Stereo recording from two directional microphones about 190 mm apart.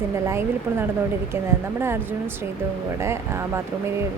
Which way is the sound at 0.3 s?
10° right (ahead or behind).